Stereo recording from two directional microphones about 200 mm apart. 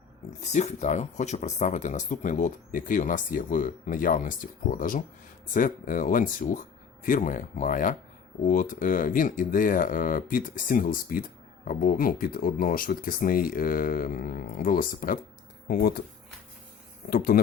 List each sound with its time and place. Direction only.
0.5 s speech: 35° left (ahead or behind)
17.1 s speech: 45° left (ahead or behind)